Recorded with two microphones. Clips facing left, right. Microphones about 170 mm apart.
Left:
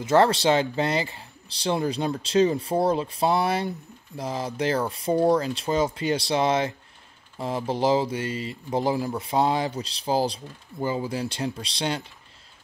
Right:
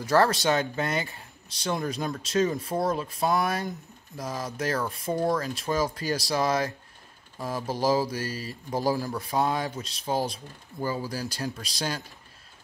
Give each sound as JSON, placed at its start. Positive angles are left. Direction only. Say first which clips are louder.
{"t": 0.0, "sound": "speech", "louder": "left 3 dB", "side_deg": 25}
{"t": 10.8, "sound": "speech", "louder": "left 3 dB", "side_deg": 20}